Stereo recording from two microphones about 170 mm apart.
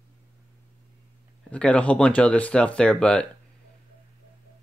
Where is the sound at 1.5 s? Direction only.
5° left (ahead or behind).